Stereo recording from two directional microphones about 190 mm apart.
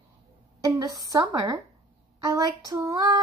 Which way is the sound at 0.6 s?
20° right (ahead or behind).